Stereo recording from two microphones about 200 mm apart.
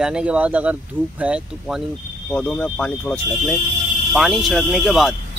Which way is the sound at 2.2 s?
5° left (ahead or behind).